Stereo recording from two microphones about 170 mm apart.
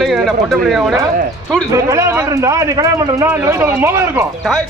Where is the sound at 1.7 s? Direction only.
20° right (ahead or behind).